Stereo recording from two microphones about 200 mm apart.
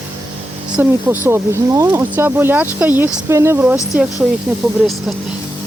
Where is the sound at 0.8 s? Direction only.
10° right (ahead or behind).